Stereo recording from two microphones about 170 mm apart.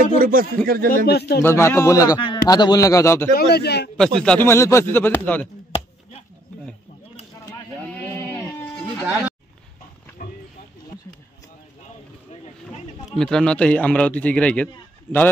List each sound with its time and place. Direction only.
0.2 s speech: 55° right (ahead or behind)
1.0 s a man's voice: 70° left (ahead or behind)
1.4 s a man's voice: 15° left (ahead or behind)
3.3 s a man's voice: 70° left (ahead or behind)
3.9 s speech: 5° left (ahead or behind)
7.9 s sheep: 10° left (ahead or behind)
9.0 s speech: 10° right (ahead or behind)
13.2 s speech: 5° left (ahead or behind)